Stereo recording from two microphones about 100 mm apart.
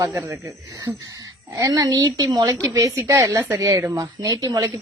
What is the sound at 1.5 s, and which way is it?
A woman's voice, 35° right (ahead or behind).